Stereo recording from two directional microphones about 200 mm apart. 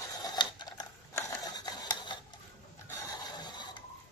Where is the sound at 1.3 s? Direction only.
20° left (ahead or behind).